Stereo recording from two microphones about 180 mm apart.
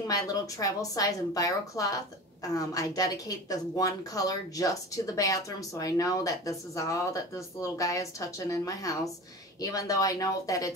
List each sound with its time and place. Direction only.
0.0 s speech: 20° left (ahead or behind)